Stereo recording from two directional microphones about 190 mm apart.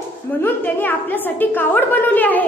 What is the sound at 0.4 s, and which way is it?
A woman's voice, 10° left (ahead or behind).